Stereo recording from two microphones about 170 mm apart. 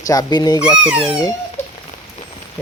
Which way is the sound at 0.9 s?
5° right (ahead or behind).